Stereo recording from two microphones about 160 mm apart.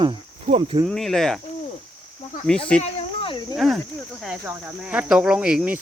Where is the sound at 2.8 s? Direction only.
35° left (ahead or behind).